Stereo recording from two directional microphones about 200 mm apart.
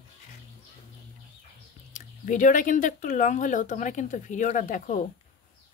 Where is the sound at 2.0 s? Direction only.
40° left (ahead or behind).